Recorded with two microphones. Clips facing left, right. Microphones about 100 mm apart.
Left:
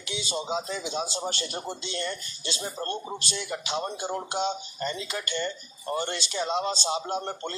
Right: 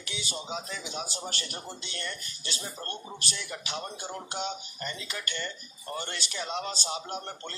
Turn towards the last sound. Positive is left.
turn(degrees=25)  # may be behind; listen again after turning